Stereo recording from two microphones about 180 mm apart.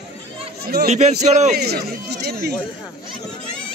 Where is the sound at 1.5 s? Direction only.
60° right (ahead or behind).